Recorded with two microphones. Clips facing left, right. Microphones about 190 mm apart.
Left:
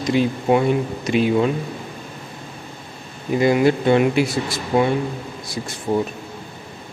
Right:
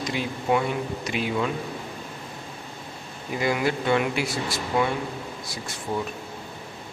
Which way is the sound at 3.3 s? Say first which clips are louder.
Left 9 dB; 30° left (ahead or behind).